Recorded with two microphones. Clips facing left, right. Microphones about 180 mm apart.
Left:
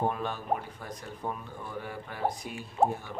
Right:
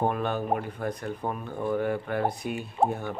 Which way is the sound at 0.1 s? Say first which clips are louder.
Right 5 dB; 60° right (ahead or behind).